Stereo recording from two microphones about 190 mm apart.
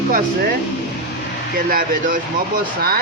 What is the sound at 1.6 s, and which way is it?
Speech, 45° right (ahead or behind).